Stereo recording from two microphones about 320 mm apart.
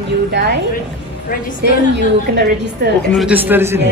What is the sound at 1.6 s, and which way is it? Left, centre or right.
A woman's voice, right.